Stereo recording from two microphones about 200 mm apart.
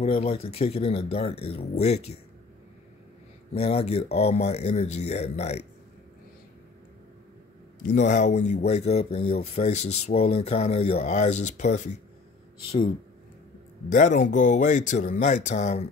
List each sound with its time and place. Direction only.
0.0 s speech: 30° left (ahead or behind)
3.5 s speech: 30° left (ahead or behind)
7.9 s speech: 35° left (ahead or behind)
13.8 s speech: 40° left (ahead or behind)